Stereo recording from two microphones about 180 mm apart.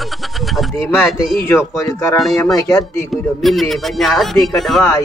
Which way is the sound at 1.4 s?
15° left (ahead or behind).